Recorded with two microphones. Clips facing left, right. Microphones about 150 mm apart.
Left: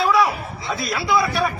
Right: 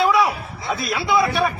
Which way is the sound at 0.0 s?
Centre (ahead or behind).